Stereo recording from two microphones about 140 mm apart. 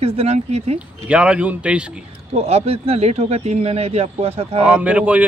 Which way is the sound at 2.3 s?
45° right (ahead or behind).